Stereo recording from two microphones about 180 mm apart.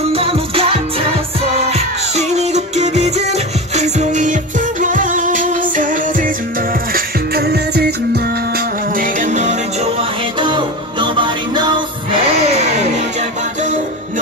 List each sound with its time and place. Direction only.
0.1 s music: 30° right (ahead or behind)
10.4 s music: 25° right (ahead or behind)